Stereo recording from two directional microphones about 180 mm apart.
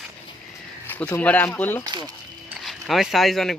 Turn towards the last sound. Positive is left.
turn(degrees=0)  # may be behind; listen again after turning